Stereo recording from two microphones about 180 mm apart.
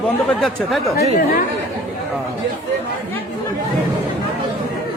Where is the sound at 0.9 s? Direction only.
55° left (ahead or behind).